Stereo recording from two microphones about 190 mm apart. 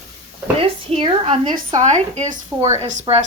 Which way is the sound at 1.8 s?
40° right (ahead or behind).